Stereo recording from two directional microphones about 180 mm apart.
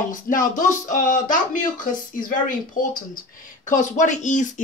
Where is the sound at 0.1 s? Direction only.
50° left (ahead or behind).